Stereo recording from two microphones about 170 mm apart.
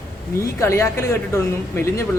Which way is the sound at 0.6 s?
15° left (ahead or behind).